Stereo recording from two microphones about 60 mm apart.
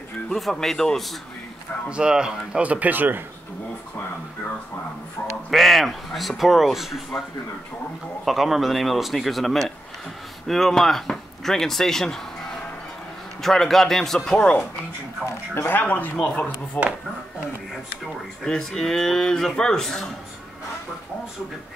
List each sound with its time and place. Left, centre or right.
0.3 s speech: centre
1.9 s speech: centre
2.6 s speech: right
5.5 s speech: centre
8.3 s speech: centre
13.4 s speech: centre
15.7 s speech: left
18.0 s speech: centre